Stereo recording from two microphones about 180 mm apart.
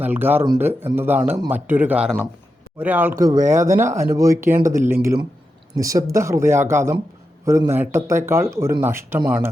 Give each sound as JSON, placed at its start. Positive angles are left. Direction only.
{"t": 0.0, "sound": "speech", "side_deg": -10}
{"t": 5.7, "sound": "speech", "side_deg": -20}